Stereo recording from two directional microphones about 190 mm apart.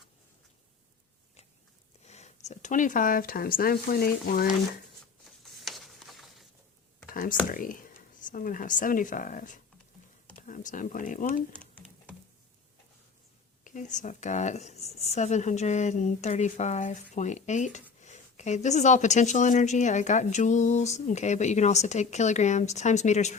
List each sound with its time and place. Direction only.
2.0 s speech: 35° left (ahead or behind); by 4.5 s 50° left (ahead or behind)
5.6 s a sound: centre (ahead or behind)
7.1 s whispering: 50° left (ahead or behind)
7.4 s speech: 45° left (ahead or behind)
13.7 s speech: 40° left (ahead or behind)